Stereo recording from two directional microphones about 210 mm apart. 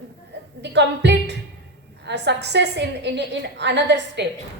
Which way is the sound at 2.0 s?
55° right (ahead or behind).